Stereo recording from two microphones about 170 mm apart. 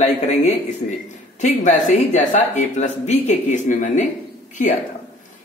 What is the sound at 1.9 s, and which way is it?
A woman's voice, 45° left (ahead or behind).